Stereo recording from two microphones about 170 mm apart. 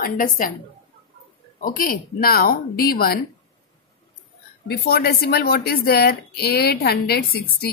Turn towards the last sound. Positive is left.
turn(degrees=65)  # may be behind; listen again after turning